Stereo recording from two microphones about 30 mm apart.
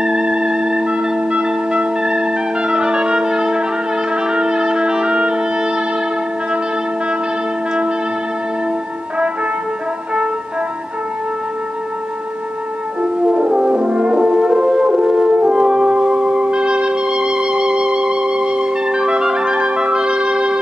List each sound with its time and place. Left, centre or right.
0.0 s music: right
13.0 s french horn: right